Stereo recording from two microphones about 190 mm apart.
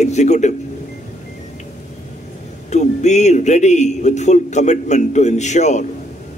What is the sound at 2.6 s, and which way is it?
A man's voice, 35° left (ahead or behind).